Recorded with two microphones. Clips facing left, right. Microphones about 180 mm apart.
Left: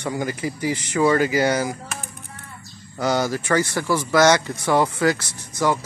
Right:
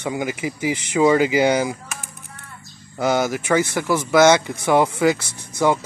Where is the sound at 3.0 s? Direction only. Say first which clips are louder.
Right 2 dB; 20° right (ahead or behind).